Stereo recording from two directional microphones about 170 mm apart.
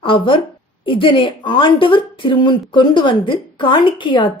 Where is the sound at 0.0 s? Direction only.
30° left (ahead or behind).